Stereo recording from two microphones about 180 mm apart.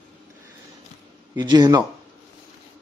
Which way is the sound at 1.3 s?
25° right (ahead or behind).